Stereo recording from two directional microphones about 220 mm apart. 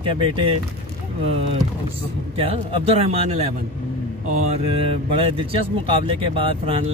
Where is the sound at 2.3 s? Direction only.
25° right (ahead or behind).